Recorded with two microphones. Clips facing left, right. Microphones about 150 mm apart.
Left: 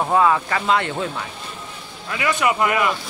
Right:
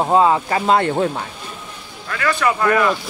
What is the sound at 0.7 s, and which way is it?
Speech, 40° right (ahead or behind).